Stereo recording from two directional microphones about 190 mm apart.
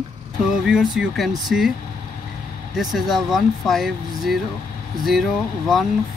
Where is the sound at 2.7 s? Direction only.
Centre (ahead or behind).